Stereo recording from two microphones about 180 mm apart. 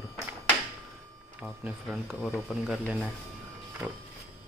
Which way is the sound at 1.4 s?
Centre (ahead or behind).